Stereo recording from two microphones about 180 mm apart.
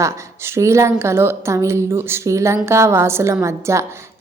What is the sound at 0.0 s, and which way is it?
A woman's voice, 15° right (ahead or behind).